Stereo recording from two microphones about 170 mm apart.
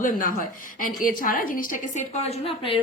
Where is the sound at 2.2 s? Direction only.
35° left (ahead or behind).